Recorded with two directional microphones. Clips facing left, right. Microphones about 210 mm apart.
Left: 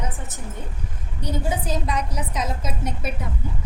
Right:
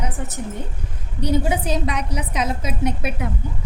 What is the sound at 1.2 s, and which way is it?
A woman's voice, 75° right (ahead or behind).